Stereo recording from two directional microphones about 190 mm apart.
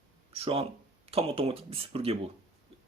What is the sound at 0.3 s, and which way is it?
Speech, 30° right (ahead or behind).